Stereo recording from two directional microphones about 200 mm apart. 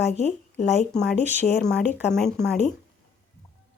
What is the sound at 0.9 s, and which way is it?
Speech, 5° left (ahead or behind).